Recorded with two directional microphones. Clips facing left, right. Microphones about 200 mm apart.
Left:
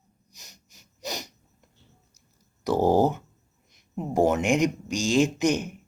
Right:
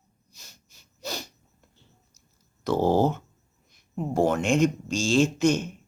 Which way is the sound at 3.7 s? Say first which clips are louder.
Even; 20° left (ahead or behind).